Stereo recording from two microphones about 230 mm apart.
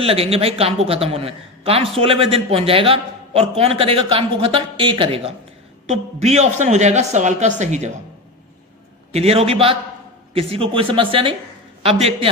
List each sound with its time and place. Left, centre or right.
0.0 s a man's voice: right
9.1 s a man's voice: right